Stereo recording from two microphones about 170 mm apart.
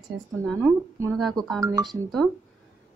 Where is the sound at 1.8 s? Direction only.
Centre (ahead or behind).